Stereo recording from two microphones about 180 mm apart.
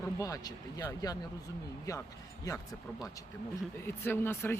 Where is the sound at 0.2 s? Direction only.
20° left (ahead or behind).